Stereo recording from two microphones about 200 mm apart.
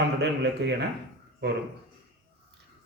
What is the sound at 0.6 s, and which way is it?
Speech, 60° right (ahead or behind).